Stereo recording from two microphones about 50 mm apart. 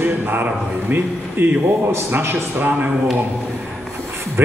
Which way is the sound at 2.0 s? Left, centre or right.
Right.